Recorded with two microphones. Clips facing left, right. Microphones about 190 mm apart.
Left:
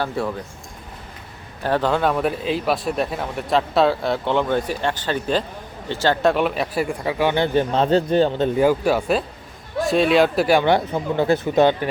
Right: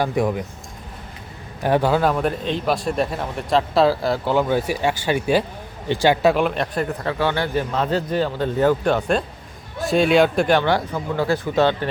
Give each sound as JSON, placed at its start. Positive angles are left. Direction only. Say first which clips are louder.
{"t": 0.0, "sound": "speech", "louder": "right 4 dB", "side_deg": -15}
{"t": 1.6, "sound": "a man's voice", "louder": "right 2 dB", "side_deg": -10}
{"t": 6.2, "sound": "a man's voice", "louder": "right 1 dB", "side_deg": 0}
{"t": 10.7, "sound": "speech", "louder": "left 2 dB", "side_deg": 20}